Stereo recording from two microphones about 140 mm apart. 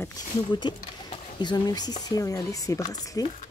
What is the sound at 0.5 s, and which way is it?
Speech, 35° left (ahead or behind).